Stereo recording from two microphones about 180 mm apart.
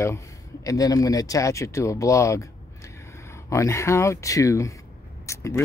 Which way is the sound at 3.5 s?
15° left (ahead or behind).